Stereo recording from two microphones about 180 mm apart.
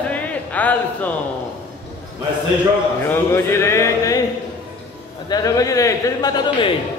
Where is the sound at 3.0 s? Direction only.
15° left (ahead or behind).